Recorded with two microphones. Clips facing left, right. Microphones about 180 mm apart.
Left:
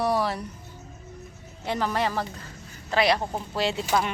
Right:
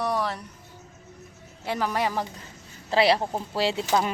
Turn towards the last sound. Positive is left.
turn(degrees=-30)  # may be behind; listen again after turning